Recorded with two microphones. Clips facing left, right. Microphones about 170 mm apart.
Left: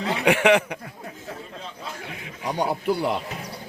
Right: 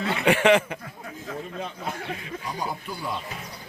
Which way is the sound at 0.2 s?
15° left (ahead or behind).